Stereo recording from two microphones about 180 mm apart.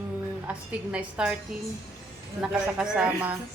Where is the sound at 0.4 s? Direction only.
5° right (ahead or behind).